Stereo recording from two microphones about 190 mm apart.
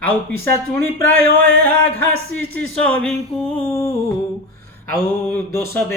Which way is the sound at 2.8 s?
5° left (ahead or behind).